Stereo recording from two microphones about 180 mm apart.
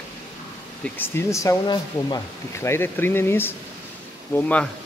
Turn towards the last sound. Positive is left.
turn(degrees=10)  # may be behind; listen again after turning